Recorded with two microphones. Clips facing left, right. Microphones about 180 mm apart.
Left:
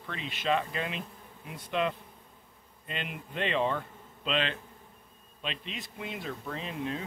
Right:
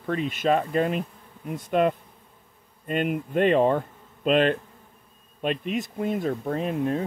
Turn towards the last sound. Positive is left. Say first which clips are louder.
# right 10 dB
turn(degrees=-45)  # may be behind; listen again after turning